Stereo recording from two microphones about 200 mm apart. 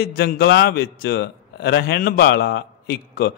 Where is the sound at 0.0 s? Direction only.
50° left (ahead or behind).